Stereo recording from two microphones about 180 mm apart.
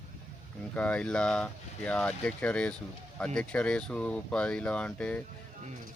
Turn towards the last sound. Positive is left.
turn(degrees=10)  # may be behind; listen again after turning